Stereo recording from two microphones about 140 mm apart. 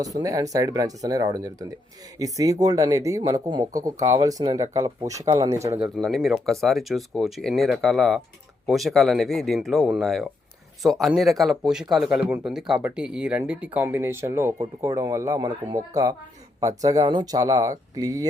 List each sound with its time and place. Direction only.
0.0 s speech: 25° right (ahead or behind)
5.8 s speech: centre (ahead or behind); by 18.3 s 25° right (ahead or behind)